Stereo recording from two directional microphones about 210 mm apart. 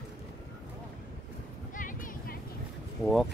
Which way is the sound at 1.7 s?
40° left (ahead or behind).